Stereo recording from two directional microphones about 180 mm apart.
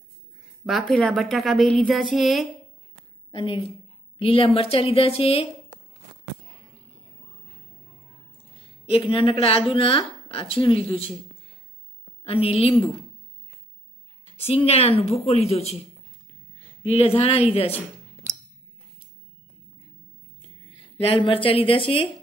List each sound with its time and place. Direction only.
0.7 s a woman's voice: centre (ahead or behind)
3.3 s a woman's voice: 30° left (ahead or behind)
8.8 s a woman's voice: 30° left (ahead or behind)
12.3 s a woman's voice: 35° left (ahead or behind)
14.4 s a woman's voice: 35° left (ahead or behind)
21.0 s speech: 30° left (ahead or behind)